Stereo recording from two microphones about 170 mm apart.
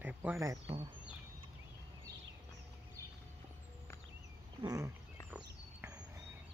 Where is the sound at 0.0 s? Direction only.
10° right (ahead or behind).